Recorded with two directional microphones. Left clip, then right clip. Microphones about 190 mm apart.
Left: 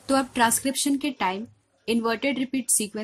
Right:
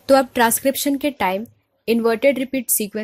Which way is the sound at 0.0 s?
35° right (ahead or behind).